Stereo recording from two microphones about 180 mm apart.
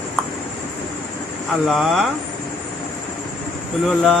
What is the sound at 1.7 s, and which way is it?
Speech, centre (ahead or behind).